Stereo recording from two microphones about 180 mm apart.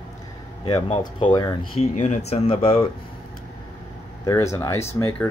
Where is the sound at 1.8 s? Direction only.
40° left (ahead or behind).